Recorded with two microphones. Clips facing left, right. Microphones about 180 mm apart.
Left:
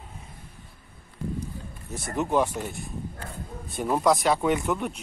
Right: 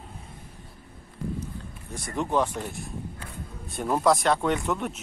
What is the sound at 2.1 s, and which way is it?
Speech, 10° left (ahead or behind).